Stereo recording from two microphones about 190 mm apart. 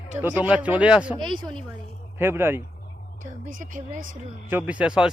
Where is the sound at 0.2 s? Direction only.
10° right (ahead or behind).